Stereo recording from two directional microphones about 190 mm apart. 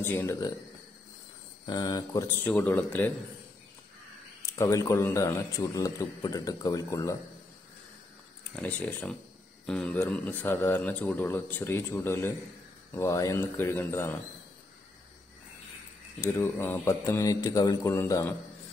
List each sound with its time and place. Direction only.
0.0 s speech: 15° left (ahead or behind)
1.7 s a man's voice: 20° left (ahead or behind)
4.5 s a man's voice: 20° left (ahead or behind)
8.5 s a man's voice: 10° left (ahead or behind)
16.2 s a man's voice: 10° left (ahead or behind)